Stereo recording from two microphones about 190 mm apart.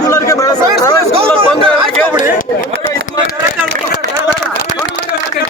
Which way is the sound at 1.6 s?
30° right (ahead or behind).